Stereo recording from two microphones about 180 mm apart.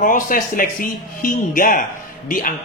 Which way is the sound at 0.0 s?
50° left (ahead or behind).